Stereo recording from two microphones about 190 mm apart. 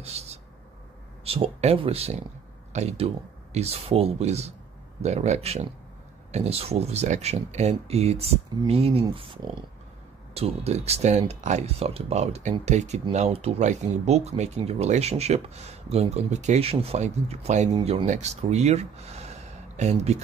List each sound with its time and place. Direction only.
0.2 s speech: 35° right (ahead or behind)